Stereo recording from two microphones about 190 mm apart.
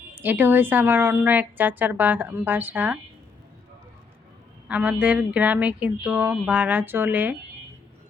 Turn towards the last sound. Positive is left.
turn(degrees=-10)  # may be behind; listen again after turning